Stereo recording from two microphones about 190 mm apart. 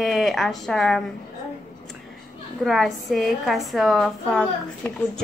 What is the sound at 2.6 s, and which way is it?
Speech, centre (ahead or behind).